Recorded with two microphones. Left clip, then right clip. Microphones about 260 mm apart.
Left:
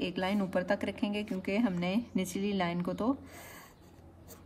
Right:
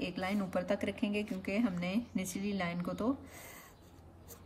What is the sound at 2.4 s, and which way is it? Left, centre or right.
Speech, left.